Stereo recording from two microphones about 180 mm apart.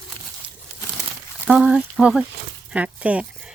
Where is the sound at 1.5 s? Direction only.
5° right (ahead or behind).